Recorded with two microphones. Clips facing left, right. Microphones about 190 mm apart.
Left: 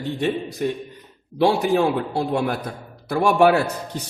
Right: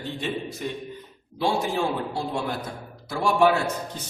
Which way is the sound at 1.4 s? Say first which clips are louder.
Left 7 dB; 65° left (ahead or behind).